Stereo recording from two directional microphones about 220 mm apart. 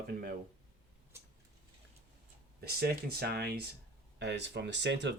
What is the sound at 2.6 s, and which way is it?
Speech, 45° right (ahead or behind).